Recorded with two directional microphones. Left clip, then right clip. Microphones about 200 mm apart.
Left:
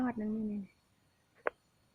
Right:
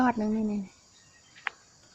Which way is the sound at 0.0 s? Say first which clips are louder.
Right 11 dB; 15° right (ahead or behind).